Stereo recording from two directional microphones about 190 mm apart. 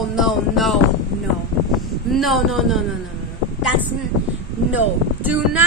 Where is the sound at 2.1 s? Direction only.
Centre (ahead or behind).